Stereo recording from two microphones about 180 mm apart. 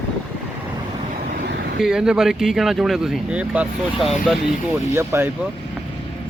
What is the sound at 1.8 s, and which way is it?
Speech, 5° right (ahead or behind).